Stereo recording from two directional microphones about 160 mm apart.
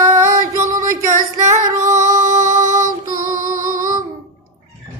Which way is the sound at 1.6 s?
20° right (ahead or behind).